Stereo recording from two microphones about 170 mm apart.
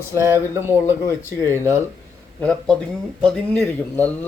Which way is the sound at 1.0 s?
15° left (ahead or behind).